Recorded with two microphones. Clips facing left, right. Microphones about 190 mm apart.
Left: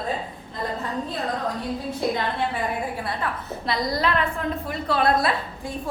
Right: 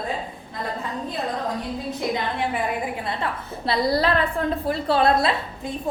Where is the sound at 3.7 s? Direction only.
30° right (ahead or behind).